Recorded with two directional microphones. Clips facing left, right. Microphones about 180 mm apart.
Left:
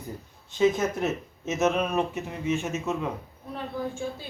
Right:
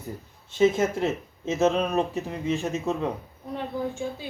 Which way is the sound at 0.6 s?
25° right (ahead or behind).